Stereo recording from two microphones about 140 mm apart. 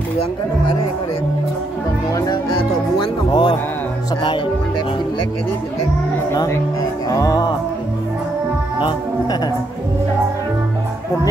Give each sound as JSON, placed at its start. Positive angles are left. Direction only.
{"t": 3.3, "sound": "a man's voice", "side_deg": 35}
{"t": 6.3, "sound": "speech", "side_deg": 25}
{"t": 8.8, "sound": "speech", "side_deg": 30}